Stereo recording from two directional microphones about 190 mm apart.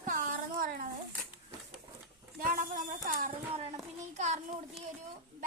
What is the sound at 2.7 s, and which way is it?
A child's voice, 45° right (ahead or behind).